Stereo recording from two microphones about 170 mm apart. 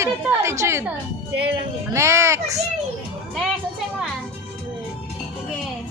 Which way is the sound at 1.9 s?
15° right (ahead or behind).